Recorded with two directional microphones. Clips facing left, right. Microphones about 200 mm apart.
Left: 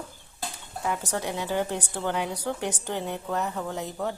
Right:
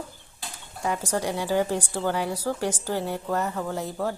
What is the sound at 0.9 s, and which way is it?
A woman's voice, 10° right (ahead or behind).